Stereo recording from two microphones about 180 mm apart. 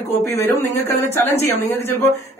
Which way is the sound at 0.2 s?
15° left (ahead or behind).